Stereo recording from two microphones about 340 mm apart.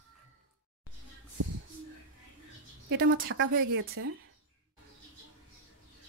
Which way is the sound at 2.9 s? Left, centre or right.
Right.